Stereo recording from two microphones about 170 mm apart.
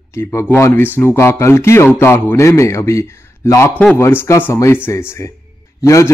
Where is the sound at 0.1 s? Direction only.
15° left (ahead or behind).